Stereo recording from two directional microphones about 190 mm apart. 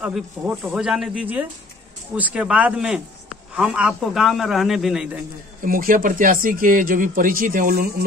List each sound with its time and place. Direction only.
0.0 s a man's voice: 5° right (ahead or behind)
5.6 s speech: 45° right (ahead or behind)